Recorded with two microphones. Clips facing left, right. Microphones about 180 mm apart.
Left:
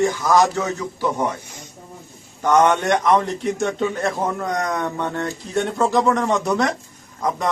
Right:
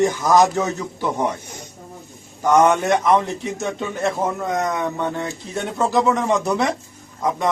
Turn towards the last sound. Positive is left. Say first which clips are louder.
# right 1 dB
turn(degrees=0)  # may be behind; listen again after turning